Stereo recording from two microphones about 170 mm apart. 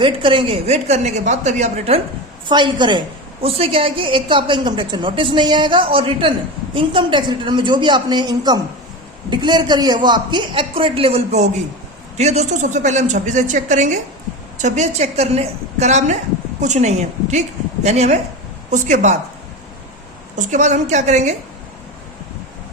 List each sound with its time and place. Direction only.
0.0 s a woman's voice: 30° right (ahead or behind)
2.5 s a woman's voice: 25° right (ahead or behind); by 19.1 s 45° right (ahead or behind)
20.3 s a woman's voice: 45° right (ahead or behind)